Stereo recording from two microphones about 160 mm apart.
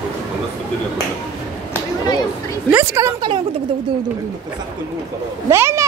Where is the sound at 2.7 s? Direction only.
15° right (ahead or behind).